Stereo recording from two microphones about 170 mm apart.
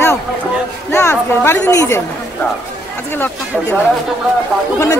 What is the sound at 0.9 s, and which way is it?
A woman's voice, 15° left (ahead or behind).